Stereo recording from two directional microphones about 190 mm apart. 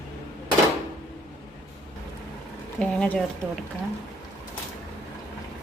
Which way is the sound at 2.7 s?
10° left (ahead or behind).